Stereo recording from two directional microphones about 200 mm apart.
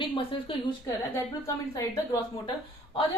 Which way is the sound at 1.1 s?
15° left (ahead or behind).